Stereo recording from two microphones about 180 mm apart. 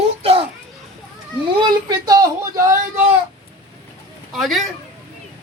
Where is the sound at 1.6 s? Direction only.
20° right (ahead or behind).